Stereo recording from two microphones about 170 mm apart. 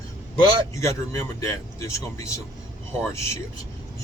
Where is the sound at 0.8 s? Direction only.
20° left (ahead or behind).